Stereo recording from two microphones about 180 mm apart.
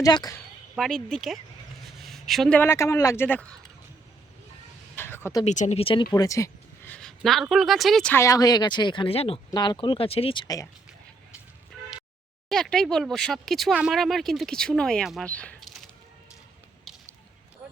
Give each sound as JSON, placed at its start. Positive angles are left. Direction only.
{"t": 0.0, "sound": "speech", "side_deg": 20}
{"t": 0.8, "sound": "speech", "side_deg": 5}
{"t": 4.9, "sound": "a sound", "side_deg": 10}
{"t": 5.5, "sound": "speech", "side_deg": 40}
{"t": 8.1, "sound": "speech", "side_deg": 15}
{"t": 12.5, "sound": "speech", "side_deg": 0}
{"t": 16.9, "sound": "a sound", "side_deg": 0}